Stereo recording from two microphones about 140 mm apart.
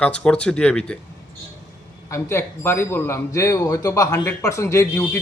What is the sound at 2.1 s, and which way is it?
Speech, 20° left (ahead or behind).